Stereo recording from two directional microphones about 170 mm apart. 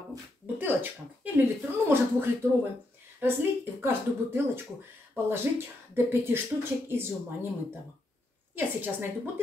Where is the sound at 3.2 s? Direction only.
10° right (ahead or behind).